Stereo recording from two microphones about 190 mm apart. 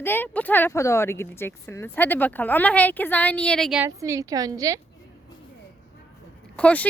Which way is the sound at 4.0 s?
15° right (ahead or behind).